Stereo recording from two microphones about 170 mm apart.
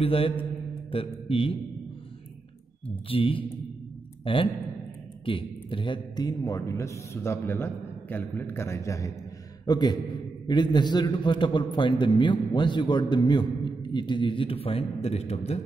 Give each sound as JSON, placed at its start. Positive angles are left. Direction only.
{"t": 0.0, "sound": "mantra", "side_deg": 35}
{"t": 3.1, "sound": "mantra", "side_deg": 30}
{"t": 4.2, "sound": "a man's voice", "side_deg": 30}